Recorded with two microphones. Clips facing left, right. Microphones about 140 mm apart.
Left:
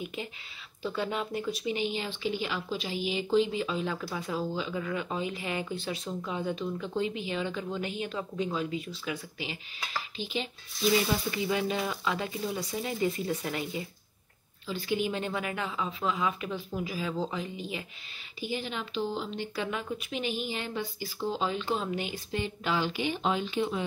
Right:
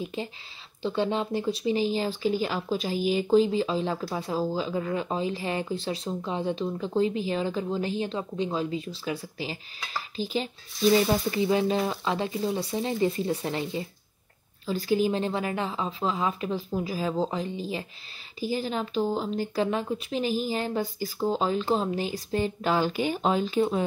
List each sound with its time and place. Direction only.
0.0 s speech: 30° right (ahead or behind)
14.7 s speech: 40° right (ahead or behind)